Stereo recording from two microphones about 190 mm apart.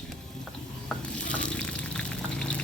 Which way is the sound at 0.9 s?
5° left (ahead or behind).